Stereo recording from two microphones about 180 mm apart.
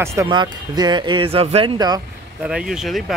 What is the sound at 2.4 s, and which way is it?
Speech, 5° right (ahead or behind).